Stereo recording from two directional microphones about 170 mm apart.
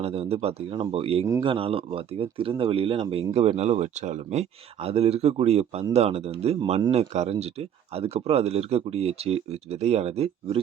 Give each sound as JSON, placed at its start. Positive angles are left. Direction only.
{"t": 0.0, "sound": "speech", "side_deg": -35}